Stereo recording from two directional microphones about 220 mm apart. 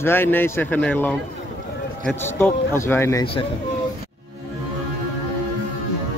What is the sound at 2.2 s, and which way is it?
A man's voice, 10° left (ahead or behind).